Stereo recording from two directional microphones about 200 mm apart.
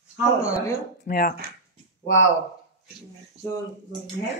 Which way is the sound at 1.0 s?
50° left (ahead or behind).